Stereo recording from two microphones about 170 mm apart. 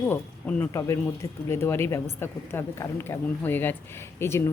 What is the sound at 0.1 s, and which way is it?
A woman's voice, 15° left (ahead or behind).